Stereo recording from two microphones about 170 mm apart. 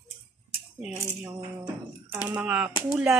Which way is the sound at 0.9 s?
15° right (ahead or behind).